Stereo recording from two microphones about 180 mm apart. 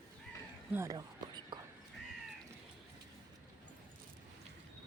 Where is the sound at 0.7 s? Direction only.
15° right (ahead or behind).